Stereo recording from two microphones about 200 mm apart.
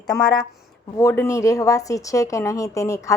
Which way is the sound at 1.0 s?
15° left (ahead or behind).